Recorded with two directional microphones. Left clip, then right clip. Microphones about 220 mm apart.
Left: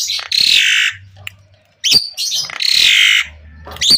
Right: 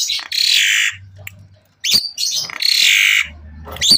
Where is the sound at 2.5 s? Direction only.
10° left (ahead or behind).